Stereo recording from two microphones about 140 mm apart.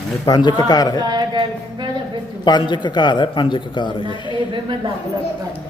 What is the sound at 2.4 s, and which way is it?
A man's voice, 30° left (ahead or behind).